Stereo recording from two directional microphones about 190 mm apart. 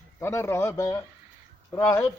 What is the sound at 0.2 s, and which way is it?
Speech, 15° left (ahead or behind).